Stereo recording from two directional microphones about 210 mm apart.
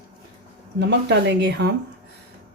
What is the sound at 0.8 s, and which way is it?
Speech, 55° right (ahead or behind).